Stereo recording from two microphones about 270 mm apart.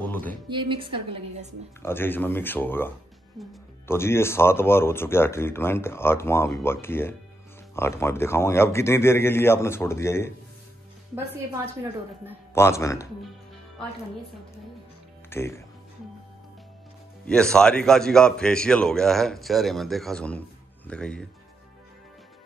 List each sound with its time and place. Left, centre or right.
0.1 s music: centre
0.5 s a woman's voice: centre
1.8 s speech: centre
12.5 s speech: centre
15.2 s speech: centre
17.3 s a man's voice: centre